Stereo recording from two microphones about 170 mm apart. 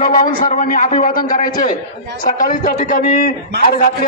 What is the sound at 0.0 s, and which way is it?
A man's voice, 55° left (ahead or behind).